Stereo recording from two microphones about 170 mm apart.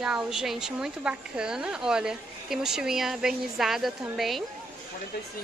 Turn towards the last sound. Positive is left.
turn(degrees=0)  # may be behind; listen again after turning